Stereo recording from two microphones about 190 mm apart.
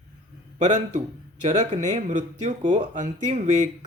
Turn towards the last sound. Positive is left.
turn(degrees=-40)  # may be behind; listen again after turning